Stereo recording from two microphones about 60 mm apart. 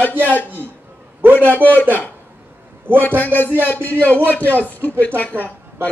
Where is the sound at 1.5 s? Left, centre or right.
Left.